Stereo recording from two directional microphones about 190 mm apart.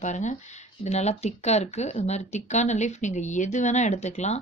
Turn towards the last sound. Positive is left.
turn(degrees=35)  # may be behind; listen again after turning